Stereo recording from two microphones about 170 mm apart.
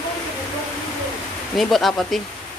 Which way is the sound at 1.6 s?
Centre (ahead or behind).